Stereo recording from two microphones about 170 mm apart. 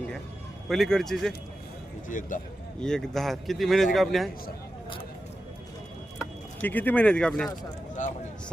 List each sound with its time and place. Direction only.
0.7 s speech: centre (ahead or behind)
2.0 s speech: 50° left (ahead or behind)
2.8 s speech: 5° left (ahead or behind)
6.6 s speech: 10° left (ahead or behind)
8.0 s speech: 45° left (ahead or behind)